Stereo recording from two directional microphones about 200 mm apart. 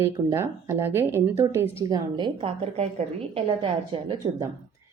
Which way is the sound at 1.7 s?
20° right (ahead or behind).